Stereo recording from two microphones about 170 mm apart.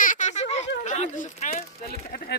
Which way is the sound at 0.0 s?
45° left (ahead or behind).